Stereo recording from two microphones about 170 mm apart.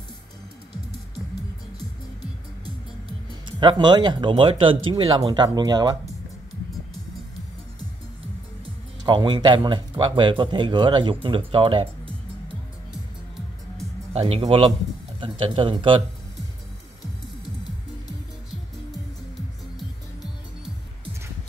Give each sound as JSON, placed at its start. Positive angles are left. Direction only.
{"t": 2.6, "sound": "speech", "side_deg": -30}
{"t": 9.0, "sound": "speech", "side_deg": -25}
{"t": 14.1, "sound": "speech", "side_deg": -30}
{"t": 19.8, "sound": "music", "side_deg": 0}